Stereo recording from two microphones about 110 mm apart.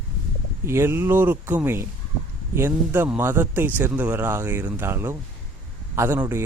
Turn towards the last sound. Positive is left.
turn(degrees=-20)  # may be behind; listen again after turning